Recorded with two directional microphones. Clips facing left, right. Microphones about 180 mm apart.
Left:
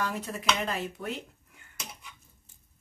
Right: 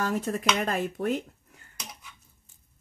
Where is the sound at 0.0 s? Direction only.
45° right (ahead or behind).